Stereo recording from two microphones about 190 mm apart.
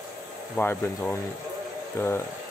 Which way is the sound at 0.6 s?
10° left (ahead or behind).